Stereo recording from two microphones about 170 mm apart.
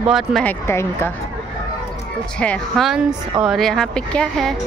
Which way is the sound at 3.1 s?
30° right (ahead or behind).